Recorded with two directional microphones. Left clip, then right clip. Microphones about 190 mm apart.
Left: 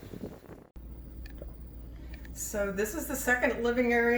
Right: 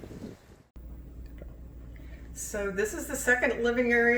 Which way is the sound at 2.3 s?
25° right (ahead or behind).